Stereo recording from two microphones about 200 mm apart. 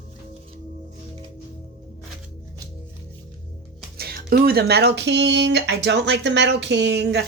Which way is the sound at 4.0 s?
50° right (ahead or behind).